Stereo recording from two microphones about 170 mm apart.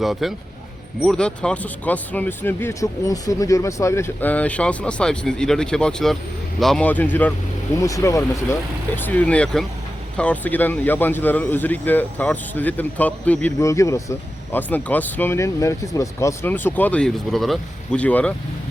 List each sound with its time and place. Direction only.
0.0 s speech: centre (ahead or behind)